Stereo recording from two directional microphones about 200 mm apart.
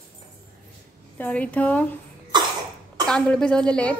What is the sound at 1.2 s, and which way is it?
Speech, 5° left (ahead or behind).